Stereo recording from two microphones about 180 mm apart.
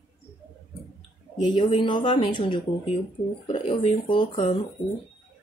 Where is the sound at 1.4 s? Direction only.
30° left (ahead or behind).